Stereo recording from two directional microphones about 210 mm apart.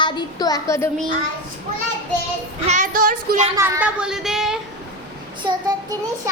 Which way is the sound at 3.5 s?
10° right (ahead or behind).